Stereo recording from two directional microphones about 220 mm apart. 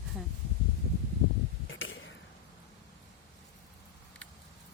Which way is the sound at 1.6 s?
60° left (ahead or behind).